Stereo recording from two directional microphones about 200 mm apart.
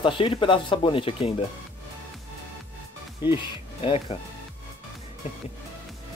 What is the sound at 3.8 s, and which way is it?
Speech, 30° left (ahead or behind).